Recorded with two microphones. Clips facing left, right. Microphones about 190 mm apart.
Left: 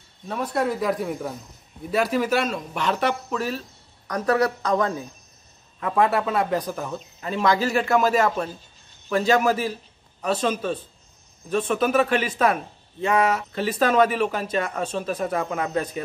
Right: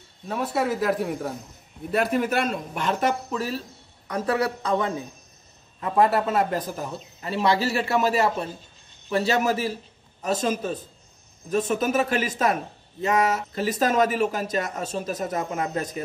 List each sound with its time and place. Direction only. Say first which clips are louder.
0.3 s speech: even; 5° right (ahead or behind)
1.9 s speech: left 1 dB; 55° right (ahead or behind); by 4.9 s 30° right (ahead or behind)
6.0 s speech: even; 5° right (ahead or behind)
7.2 s speech: left 1 dB; 35° right (ahead or behind)